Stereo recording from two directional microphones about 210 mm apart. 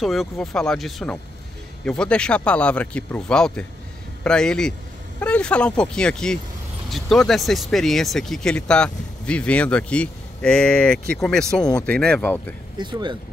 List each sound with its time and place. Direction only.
0.0 s speech: centre (ahead or behind)
12.7 s speech: 20° right (ahead or behind)